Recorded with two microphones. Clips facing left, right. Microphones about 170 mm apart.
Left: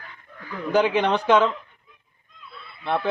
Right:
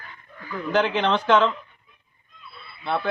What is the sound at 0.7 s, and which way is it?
Speech, 10° left (ahead or behind).